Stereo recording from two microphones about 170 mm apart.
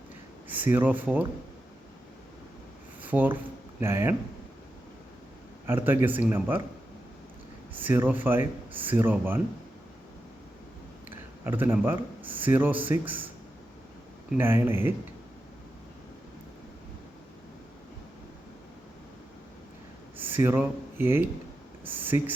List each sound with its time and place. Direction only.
0.4 s a man's voice: 10° right (ahead or behind)
3.0 s speech: 10° right (ahead or behind)
5.6 s a man's voice: 15° right (ahead or behind)
7.8 s a man's voice: 10° right (ahead or behind)
11.4 s a man's voice: 15° right (ahead or behind)
14.3 s a man's voice: 15° right (ahead or behind)
20.1 s speech: 10° right (ahead or behind)